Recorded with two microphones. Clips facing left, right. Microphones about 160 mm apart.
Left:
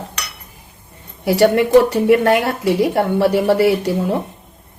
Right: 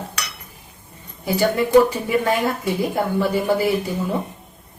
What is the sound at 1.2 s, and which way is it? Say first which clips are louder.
A woman's voice: left 6 dB; 75° left (ahead or behind).